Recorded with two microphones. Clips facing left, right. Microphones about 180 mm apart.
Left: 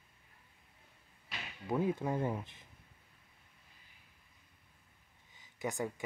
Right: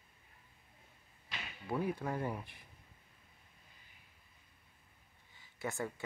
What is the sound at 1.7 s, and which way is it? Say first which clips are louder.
Speech: left 3 dB; 20° left (ahead or behind).